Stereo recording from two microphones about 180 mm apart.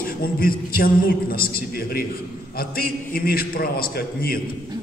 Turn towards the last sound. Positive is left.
turn(degrees=55)  # may be behind; listen again after turning